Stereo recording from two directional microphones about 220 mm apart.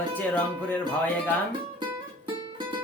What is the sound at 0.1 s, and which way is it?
Speech, 5° left (ahead or behind).